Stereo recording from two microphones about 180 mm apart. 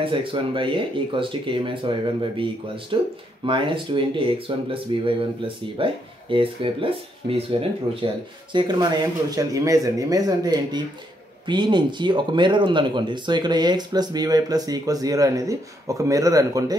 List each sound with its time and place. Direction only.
0.0 s speech: 30° right (ahead or behind)
8.5 s speech: 25° right (ahead or behind)